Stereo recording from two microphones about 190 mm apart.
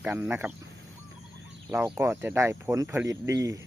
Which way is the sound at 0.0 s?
10° right (ahead or behind).